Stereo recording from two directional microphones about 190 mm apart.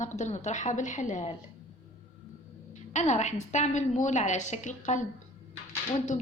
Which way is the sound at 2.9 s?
35° left (ahead or behind).